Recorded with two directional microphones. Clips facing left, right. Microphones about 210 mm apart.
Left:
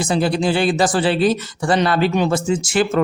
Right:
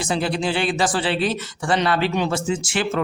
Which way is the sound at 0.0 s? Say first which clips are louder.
Left 5 dB; 40° left (ahead or behind).